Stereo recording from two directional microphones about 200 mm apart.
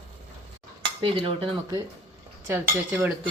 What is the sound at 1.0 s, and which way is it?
Speech, 25° right (ahead or behind).